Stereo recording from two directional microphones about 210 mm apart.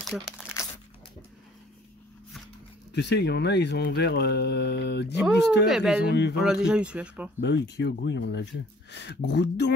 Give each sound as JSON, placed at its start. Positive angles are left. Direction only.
{"t": 0.0, "sound": "crumpling", "side_deg": -5}
{"t": 2.9, "sound": "speech", "side_deg": 55}
{"t": 5.2, "sound": "speech", "side_deg": 0}
{"t": 7.4, "sound": "speech", "side_deg": 55}